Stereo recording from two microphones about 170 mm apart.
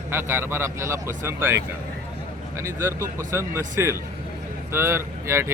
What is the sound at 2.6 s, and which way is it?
Speech, 15° right (ahead or behind).